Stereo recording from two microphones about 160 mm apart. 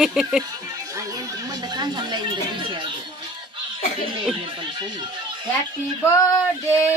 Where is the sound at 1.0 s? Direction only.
20° right (ahead or behind).